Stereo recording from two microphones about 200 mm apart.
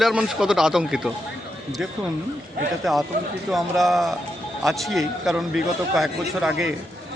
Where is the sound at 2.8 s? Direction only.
Centre (ahead or behind).